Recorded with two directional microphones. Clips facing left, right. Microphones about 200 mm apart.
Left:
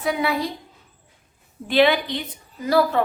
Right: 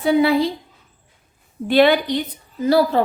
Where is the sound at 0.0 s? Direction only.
30° right (ahead or behind).